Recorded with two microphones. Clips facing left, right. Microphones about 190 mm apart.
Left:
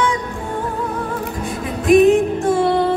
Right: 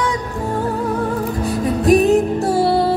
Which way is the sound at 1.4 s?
35° right (ahead or behind).